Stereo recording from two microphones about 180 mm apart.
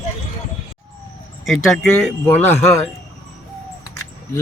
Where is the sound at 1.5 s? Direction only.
5° left (ahead or behind).